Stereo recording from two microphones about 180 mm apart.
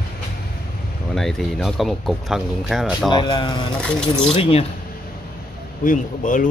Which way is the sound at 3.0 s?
25° left (ahead or behind).